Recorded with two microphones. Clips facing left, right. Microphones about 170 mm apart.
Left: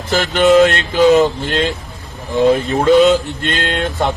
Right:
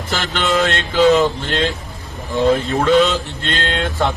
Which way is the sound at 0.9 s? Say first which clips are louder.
Left 2 dB; 15° left (ahead or behind).